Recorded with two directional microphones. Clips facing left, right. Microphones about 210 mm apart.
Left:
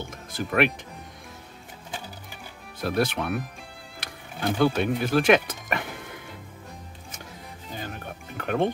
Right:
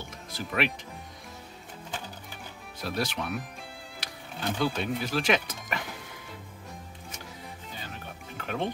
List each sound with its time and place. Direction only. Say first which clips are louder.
0.3 s speech: left 6 dB; 55° left (ahead or behind)
2.8 s speech: left 6 dB; 55° left (ahead or behind)
4.0 s music: left 2 dB; 55° left (ahead or behind)
4.6 s speech: left 7 dB; 60° left (ahead or behind)
7.8 s music: left 5 dB; 50° left (ahead or behind)